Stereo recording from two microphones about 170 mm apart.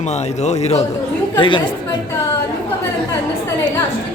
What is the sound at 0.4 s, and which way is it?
Speech, 40° left (ahead or behind).